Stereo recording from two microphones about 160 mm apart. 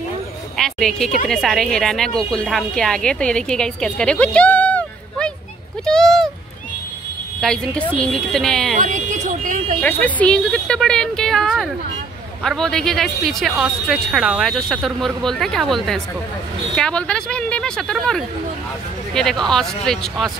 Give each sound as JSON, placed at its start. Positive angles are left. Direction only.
{"t": 0.6, "sound": "a woman's voice", "side_deg": 0}
{"t": 7.3, "sound": "speech", "side_deg": 5}
{"t": 8.7, "sound": "vehicle", "side_deg": -50}
{"t": 9.8, "sound": "speech", "side_deg": 10}